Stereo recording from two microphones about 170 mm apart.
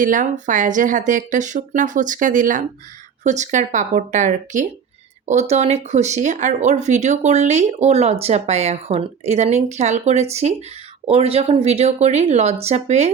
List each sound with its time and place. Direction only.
0.0 s speech: 50° right (ahead or behind)